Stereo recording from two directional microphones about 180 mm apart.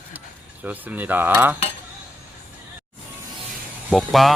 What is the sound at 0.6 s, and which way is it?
Cutlery, 10° right (ahead or behind).